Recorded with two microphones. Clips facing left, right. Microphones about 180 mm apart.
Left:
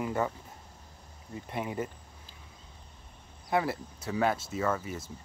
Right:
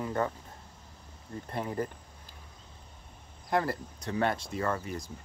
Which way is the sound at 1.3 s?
10° left (ahead or behind).